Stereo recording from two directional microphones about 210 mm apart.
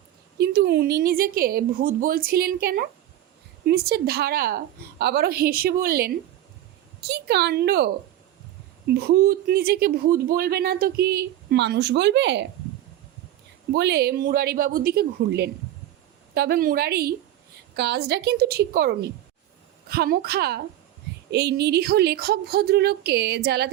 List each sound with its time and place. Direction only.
0.3 s speech: 50° right (ahead or behind)
9.0 s speech: 45° right (ahead or behind)
13.7 s speech: 50° right (ahead or behind)